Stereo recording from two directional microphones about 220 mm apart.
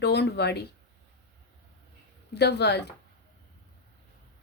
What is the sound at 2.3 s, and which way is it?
Speech, 50° left (ahead or behind).